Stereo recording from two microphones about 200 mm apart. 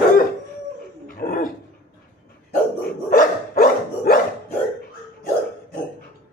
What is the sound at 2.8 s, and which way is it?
Dog, 45° left (ahead or behind).